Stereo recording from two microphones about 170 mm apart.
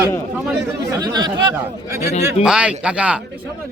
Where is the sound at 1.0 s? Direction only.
25° right (ahead or behind).